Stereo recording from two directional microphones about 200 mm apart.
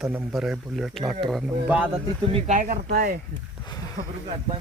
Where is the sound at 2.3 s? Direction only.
35° right (ahead or behind).